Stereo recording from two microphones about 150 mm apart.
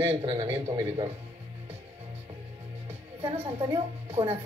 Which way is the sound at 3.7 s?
40° right (ahead or behind).